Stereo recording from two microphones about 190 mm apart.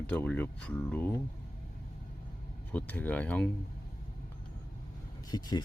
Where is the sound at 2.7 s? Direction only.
10° left (ahead or behind).